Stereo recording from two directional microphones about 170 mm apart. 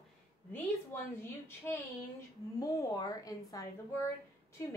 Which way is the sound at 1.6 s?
10° left (ahead or behind).